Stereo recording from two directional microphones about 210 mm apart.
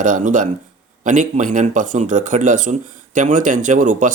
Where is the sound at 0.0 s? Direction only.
35° right (ahead or behind).